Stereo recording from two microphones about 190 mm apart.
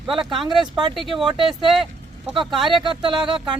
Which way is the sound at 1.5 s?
Centre (ahead or behind).